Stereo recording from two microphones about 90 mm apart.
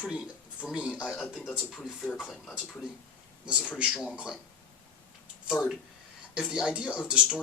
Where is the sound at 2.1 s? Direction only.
Centre (ahead or behind).